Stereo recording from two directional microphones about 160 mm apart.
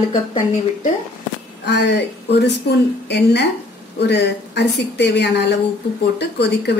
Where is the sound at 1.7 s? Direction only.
90° left.